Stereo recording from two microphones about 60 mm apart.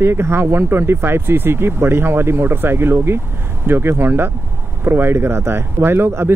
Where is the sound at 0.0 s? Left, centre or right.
Right.